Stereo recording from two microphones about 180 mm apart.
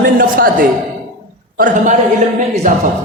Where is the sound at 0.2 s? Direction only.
50° right (ahead or behind).